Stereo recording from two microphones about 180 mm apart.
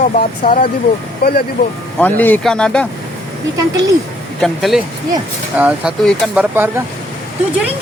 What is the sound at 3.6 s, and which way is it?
Speech, 20° right (ahead or behind).